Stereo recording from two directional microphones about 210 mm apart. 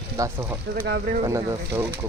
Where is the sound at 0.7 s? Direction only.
45° right (ahead or behind).